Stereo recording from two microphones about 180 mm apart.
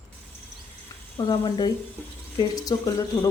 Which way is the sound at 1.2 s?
25° left (ahead or behind).